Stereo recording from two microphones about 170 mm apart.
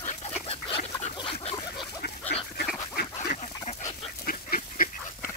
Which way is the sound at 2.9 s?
65° left (ahead or behind).